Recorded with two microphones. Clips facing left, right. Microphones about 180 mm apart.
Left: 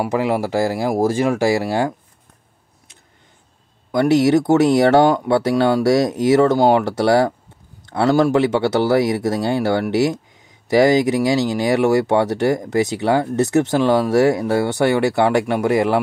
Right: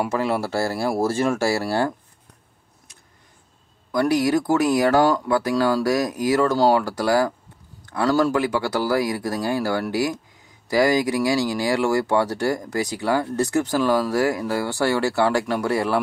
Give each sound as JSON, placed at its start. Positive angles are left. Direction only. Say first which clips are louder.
{"t": 0.1, "sound": "speech", "louder": "left 4 dB", "side_deg": 15}
{"t": 3.9, "sound": "speech", "louder": "left 5 dB", "side_deg": 25}